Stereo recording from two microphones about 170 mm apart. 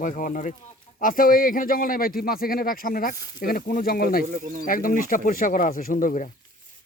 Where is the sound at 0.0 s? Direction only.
50° left (ahead or behind).